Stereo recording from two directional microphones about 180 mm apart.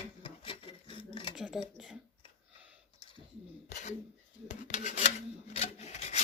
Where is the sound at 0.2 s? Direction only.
30° left (ahead or behind).